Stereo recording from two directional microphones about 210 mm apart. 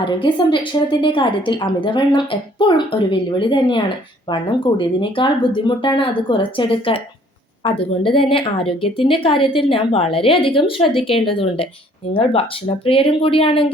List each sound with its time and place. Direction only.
0.0 s a woman's voice: 25° left (ahead or behind)